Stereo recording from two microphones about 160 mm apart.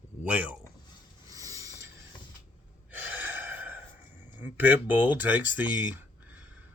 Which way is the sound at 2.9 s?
10° right (ahead or behind).